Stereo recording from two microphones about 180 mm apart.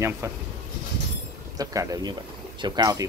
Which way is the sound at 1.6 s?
20° right (ahead or behind).